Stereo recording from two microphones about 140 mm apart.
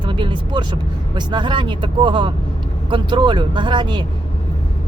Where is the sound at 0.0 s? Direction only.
35° right (ahead or behind).